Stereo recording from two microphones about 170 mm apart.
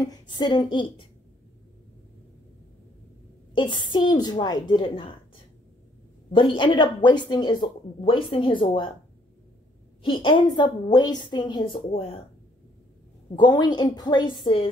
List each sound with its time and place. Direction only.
0.0 s speech: 25° left (ahead or behind)
3.5 s speech: 30° left (ahead or behind)
6.3 s speech: 30° left (ahead or behind)
10.0 s speech: 30° left (ahead or behind)
13.4 s speech: 25° left (ahead or behind)